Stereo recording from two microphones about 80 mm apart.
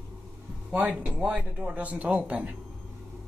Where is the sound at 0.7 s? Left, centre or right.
Centre.